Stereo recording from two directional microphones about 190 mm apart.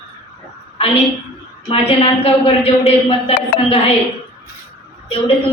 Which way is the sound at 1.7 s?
30° left (ahead or behind).